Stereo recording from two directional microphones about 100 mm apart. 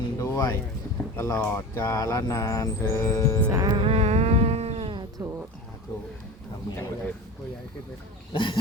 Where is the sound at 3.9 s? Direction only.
90° right.